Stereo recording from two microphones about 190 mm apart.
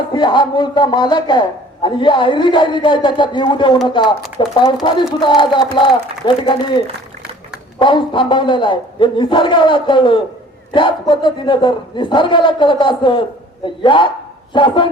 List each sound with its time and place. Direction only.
0.1 s a man's voice: 25° left (ahead or behind)